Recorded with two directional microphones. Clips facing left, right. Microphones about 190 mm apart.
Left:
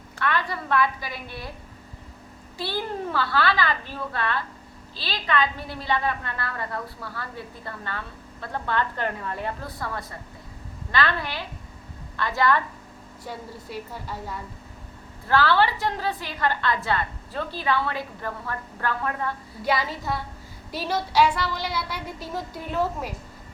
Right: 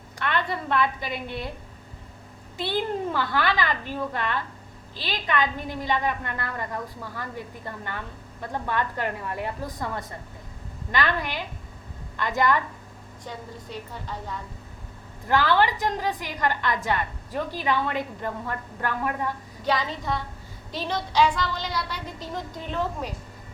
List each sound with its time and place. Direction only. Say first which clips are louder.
0.2 s a woman's voice: even; 25° right (ahead or behind)
2.6 s a woman's voice: right 3 dB; 20° right (ahead or behind)
13.2 s a woman's voice: left 1 dB; 10° left (ahead or behind)
15.3 s a woman's voice: even; 15° right (ahead or behind)
19.6 s a woman's voice: even; 10° left (ahead or behind)